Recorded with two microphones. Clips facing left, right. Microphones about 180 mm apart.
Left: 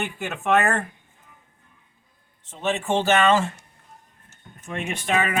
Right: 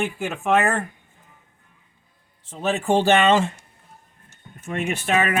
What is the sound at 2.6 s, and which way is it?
Speech, 40° right (ahead or behind).